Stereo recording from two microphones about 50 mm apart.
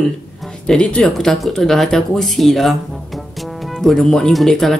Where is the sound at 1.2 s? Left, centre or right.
Centre.